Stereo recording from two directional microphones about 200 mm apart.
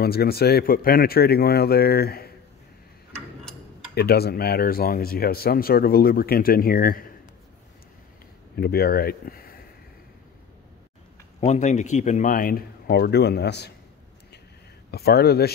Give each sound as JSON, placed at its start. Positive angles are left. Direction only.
{"t": 0.0, "sound": "speech", "side_deg": 50}
{"t": 3.9, "sound": "speech", "side_deg": 50}
{"t": 8.5, "sound": "speech", "side_deg": 50}
{"t": 11.4, "sound": "speech", "side_deg": 35}
{"t": 14.9, "sound": "speech", "side_deg": 55}